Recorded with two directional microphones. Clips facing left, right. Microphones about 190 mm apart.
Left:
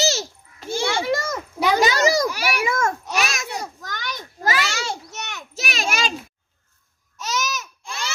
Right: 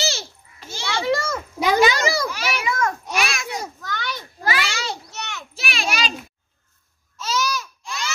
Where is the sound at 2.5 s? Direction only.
45° left (ahead or behind).